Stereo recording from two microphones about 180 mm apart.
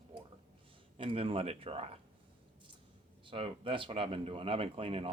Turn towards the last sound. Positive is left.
turn(degrees=-30)  # may be behind; listen again after turning